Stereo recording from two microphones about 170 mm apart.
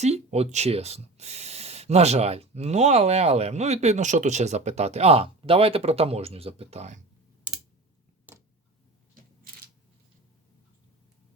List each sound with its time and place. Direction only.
0.0 s speech: 40° right (ahead or behind)
8.3 s tick-tock: 10° right (ahead or behind)